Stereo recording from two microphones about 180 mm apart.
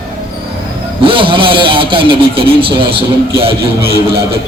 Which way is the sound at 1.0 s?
30° right (ahead or behind).